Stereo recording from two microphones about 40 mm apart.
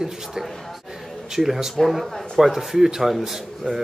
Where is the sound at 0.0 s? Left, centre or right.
Centre.